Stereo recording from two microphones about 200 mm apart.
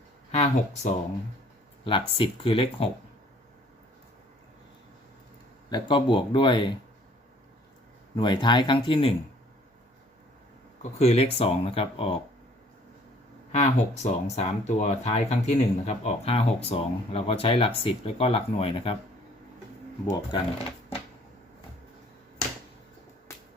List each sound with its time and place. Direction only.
0.3 s speech: 35° left (ahead or behind)
5.7 s speech: 25° left (ahead or behind)
8.1 s speech: 20° left (ahead or behind)
11.0 s speech: 30° left (ahead or behind)
13.5 s speech: 35° left (ahead or behind)
20.3 s speech: 25° left (ahead or behind)